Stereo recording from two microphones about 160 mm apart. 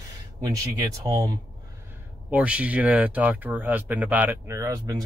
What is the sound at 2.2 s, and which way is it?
A man's voice, 10° right (ahead or behind).